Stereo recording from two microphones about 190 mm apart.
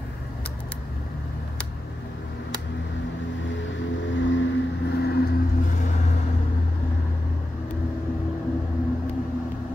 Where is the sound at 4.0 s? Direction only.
75° left (ahead or behind); by 5.9 s 50° left (ahead or behind).